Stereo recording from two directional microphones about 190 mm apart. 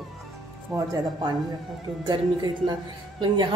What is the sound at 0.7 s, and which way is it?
A woman's voice, 20° right (ahead or behind).